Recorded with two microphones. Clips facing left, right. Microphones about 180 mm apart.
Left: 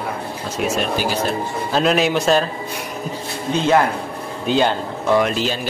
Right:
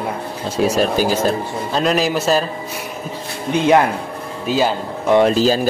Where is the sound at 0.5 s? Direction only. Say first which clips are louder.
Right 5 dB; 35° right (ahead or behind).